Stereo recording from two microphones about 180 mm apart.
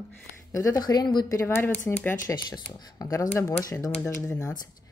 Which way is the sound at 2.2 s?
20° left (ahead or behind).